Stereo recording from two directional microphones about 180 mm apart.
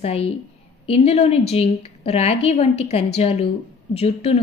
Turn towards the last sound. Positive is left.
turn(degrees=35)  # may be behind; listen again after turning